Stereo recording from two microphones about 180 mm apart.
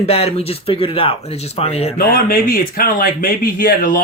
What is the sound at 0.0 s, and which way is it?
Speech, 35° left (ahead or behind).